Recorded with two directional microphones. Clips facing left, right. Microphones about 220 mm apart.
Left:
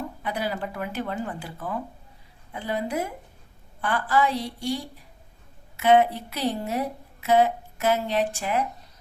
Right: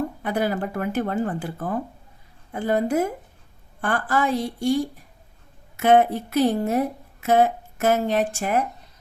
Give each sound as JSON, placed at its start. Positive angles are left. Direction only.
{"t": 0.2, "sound": "a woman's voice", "side_deg": -50}